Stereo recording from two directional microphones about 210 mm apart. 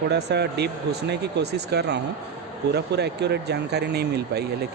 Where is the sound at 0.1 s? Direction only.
50° right (ahead or behind).